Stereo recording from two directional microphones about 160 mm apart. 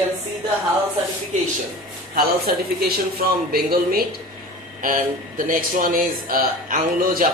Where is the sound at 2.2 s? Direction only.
70° right (ahead or behind).